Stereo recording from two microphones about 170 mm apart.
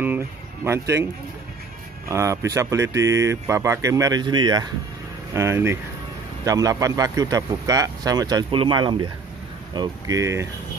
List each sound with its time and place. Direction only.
0.7 s speech: 15° right (ahead or behind)
2.0 s speech: 15° right (ahead or behind)